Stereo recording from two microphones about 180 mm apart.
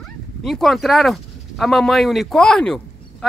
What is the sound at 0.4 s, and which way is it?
Speech, centre (ahead or behind).